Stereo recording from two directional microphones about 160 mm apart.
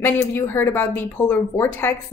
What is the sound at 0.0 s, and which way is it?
Speech, 15° left (ahead or behind).